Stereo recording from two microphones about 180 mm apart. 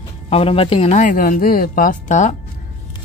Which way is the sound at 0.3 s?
30° left (ahead or behind).